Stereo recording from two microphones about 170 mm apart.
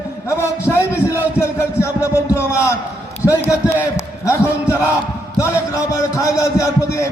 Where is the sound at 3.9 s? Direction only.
15° left (ahead or behind).